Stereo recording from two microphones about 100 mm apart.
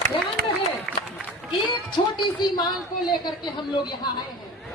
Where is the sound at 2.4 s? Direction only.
45° left (ahead or behind).